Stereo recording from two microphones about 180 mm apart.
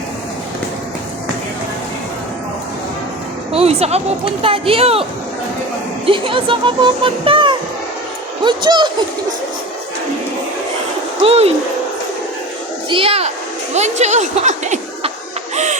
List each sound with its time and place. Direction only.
3.5 s music: 35° right (ahead or behind)
4.4 s speech: 30° right (ahead or behind)
6.1 s speech: 30° right (ahead or behind)
11.2 s speech: 35° right (ahead or behind)
12.9 s speech: 30° right (ahead or behind)
15.5 s bird: 40° right (ahead or behind)